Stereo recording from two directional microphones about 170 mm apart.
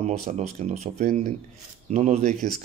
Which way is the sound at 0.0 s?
45° right (ahead or behind).